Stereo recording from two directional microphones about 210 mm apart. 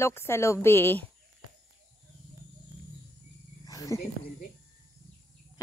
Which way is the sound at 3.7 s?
15° left (ahead or behind).